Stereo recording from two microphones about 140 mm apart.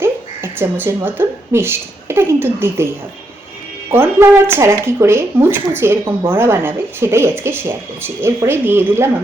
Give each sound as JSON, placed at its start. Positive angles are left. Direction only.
{"t": 0.0, "sound": "a woman's voice", "side_deg": -15}
{"t": 3.9, "sound": "speech", "side_deg": -15}